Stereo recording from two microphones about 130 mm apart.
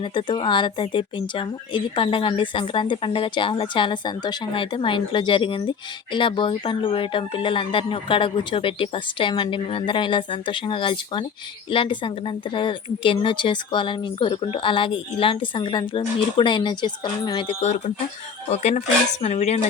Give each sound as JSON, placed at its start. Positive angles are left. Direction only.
{"t": 0.0, "sound": "speech", "side_deg": 40}
{"t": 17.6, "sound": "speech", "side_deg": 60}